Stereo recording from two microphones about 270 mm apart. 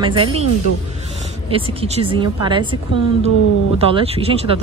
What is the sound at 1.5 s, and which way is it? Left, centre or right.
Speech, right.